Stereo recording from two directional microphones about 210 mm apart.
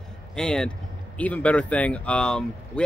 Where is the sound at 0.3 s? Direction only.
5° left (ahead or behind).